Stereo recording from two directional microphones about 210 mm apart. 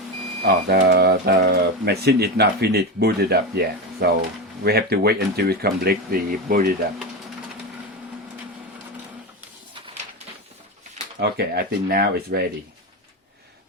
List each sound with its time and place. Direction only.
0.4 s speech: 50° right (ahead or behind)
4.6 s speech: 50° right (ahead or behind)
11.2 s speech: 50° right (ahead or behind)